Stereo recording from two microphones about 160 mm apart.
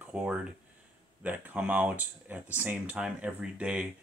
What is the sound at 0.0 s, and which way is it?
Speech, 5° right (ahead or behind).